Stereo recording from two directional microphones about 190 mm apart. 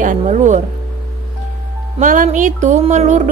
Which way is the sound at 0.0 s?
40° right (ahead or behind).